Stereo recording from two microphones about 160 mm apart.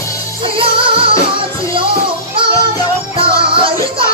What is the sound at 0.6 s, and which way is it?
Music, 35° right (ahead or behind).